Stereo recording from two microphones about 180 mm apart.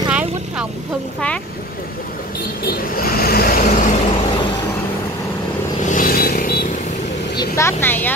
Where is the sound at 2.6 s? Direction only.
55° left (ahead or behind).